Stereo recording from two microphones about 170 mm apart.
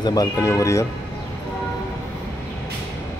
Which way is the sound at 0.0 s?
20° left (ahead or behind).